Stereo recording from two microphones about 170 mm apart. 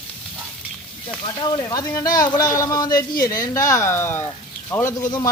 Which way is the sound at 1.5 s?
20° left (ahead or behind).